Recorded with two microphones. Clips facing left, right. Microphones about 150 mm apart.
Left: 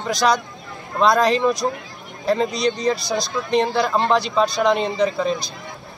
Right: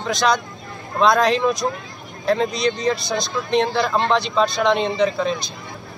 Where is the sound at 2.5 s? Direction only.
35° left (ahead or behind).